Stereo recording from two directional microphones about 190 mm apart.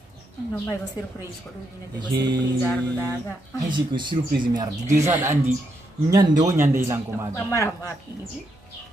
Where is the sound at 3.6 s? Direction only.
25° right (ahead or behind).